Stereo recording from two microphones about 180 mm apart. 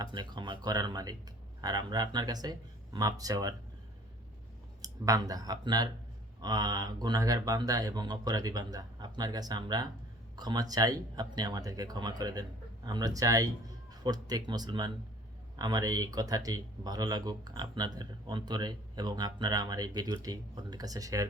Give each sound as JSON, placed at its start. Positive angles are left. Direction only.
{"t": 0.0, "sound": "speech", "side_deg": -25}
{"t": 4.8, "sound": "speech", "side_deg": -20}